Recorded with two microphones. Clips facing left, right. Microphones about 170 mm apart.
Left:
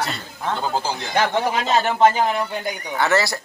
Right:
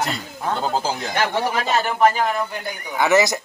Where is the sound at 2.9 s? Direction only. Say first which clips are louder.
Right 3 dB; 15° right (ahead or behind).